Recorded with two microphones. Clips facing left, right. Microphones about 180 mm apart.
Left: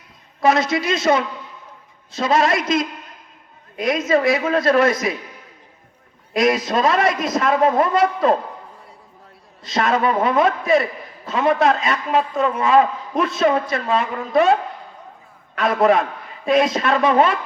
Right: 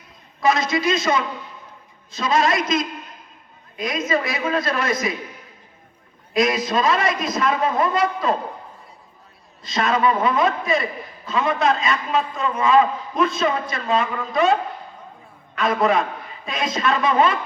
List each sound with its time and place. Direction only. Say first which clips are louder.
0.4 s a man's voice: left 2 dB; 65° left (ahead or behind)
6.3 s a man's voice: left 2 dB; 65° left (ahead or behind)
9.6 s a man's voice: left 1 dB; 60° left (ahead or behind)
15.5 s a man's voice: left 3 dB; 60° left (ahead or behind)